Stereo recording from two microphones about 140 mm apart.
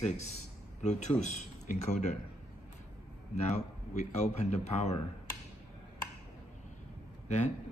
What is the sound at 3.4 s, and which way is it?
Speech, 50° left (ahead or behind).